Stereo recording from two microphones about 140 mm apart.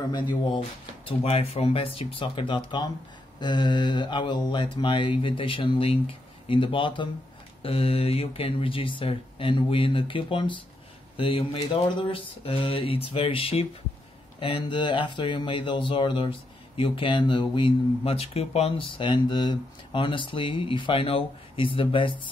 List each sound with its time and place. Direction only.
0.1 s speech: 40° left (ahead or behind)